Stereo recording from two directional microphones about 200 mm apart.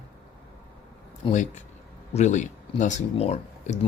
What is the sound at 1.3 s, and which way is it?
Speech, 40° left (ahead or behind).